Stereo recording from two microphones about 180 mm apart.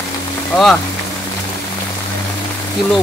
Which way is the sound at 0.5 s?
Centre (ahead or behind).